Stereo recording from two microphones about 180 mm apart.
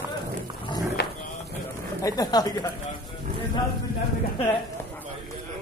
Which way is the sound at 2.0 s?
20° left (ahead or behind).